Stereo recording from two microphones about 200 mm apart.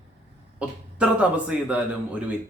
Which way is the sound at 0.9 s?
5° right (ahead or behind).